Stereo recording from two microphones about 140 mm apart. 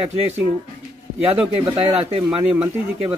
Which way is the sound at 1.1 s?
5° right (ahead or behind).